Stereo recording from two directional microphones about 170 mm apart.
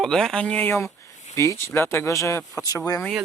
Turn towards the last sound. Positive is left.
turn(degrees=20)  # may be behind; listen again after turning